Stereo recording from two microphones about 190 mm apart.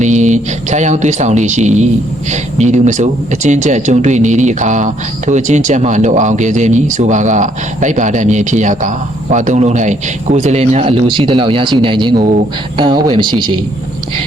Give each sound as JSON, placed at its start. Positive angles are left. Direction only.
{"t": 0.0, "sound": "speech", "side_deg": -40}